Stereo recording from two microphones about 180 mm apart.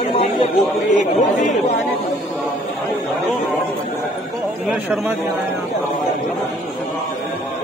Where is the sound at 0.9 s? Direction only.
45° left (ahead or behind).